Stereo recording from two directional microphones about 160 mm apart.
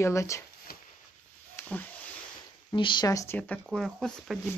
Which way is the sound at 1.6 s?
10° left (ahead or behind).